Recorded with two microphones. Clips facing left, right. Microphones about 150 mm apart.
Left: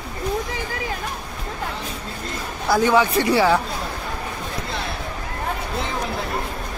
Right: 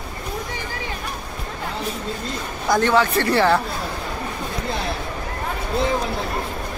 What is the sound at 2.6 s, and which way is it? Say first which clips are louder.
Speech: left 1 dB; 10° left (ahead or behind).